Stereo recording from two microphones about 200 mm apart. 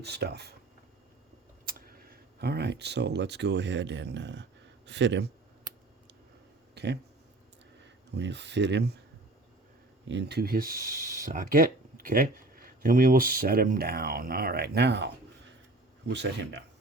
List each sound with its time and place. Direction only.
0.0 s speech: 55° right (ahead or behind)
1.6 s speech: 50° right (ahead or behind)
6.7 s speech: 55° right (ahead or behind)
8.1 s speech: 60° right (ahead or behind)
10.1 s speech: 60° right (ahead or behind)